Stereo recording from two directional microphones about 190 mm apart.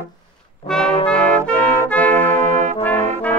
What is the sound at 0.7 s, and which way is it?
Brass instrument, 5° left (ahead or behind).